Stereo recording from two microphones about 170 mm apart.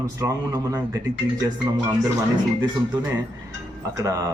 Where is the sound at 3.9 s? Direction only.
20° right (ahead or behind).